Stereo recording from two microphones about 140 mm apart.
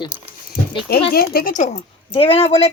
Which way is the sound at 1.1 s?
85° left.